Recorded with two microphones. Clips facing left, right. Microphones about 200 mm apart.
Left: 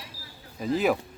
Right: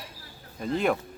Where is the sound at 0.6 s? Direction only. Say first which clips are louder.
Left 1 dB; 5° left (ahead or behind).